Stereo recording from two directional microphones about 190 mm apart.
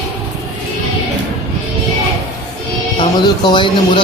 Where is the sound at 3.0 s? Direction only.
25° left (ahead or behind).